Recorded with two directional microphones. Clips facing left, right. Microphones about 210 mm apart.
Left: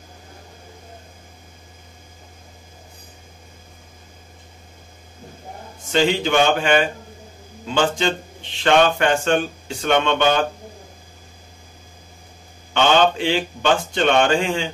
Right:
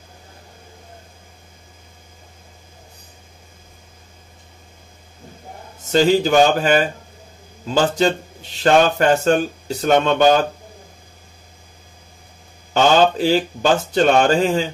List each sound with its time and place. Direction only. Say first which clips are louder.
5.9 s a man's voice: right 4 dB; 40° right (ahead or behind)
13.2 s a man's voice: right 4 dB; 40° right (ahead or behind)